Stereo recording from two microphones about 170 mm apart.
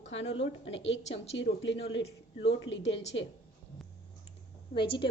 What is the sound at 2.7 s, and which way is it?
Speech, 90° left.